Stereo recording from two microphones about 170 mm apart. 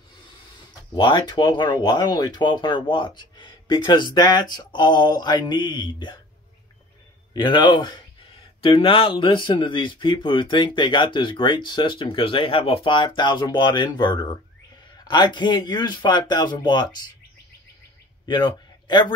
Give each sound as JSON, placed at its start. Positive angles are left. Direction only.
{"t": 0.9, "sound": "speech", "side_deg": 25}
{"t": 7.3, "sound": "speech", "side_deg": 25}
{"t": 18.2, "sound": "a man's voice", "side_deg": 25}